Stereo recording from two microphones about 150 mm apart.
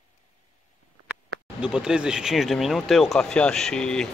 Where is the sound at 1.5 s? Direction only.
5° right (ahead or behind).